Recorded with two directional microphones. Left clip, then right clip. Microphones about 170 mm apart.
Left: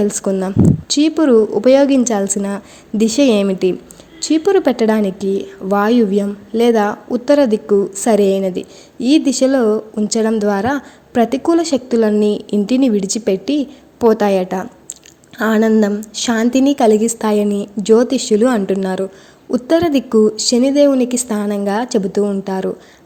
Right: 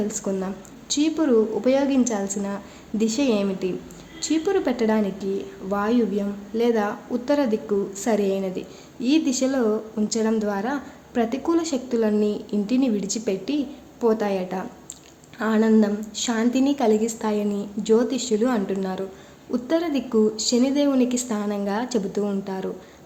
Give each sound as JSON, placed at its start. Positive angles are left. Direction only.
{"t": 0.0, "sound": "speech", "side_deg": 50}